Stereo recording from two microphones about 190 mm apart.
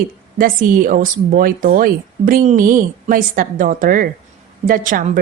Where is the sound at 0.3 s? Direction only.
45° right (ahead or behind).